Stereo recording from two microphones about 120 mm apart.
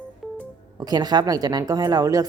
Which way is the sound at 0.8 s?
35° right (ahead or behind).